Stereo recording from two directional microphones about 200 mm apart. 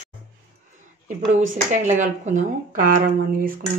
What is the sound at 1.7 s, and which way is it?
Speech, 40° right (ahead or behind).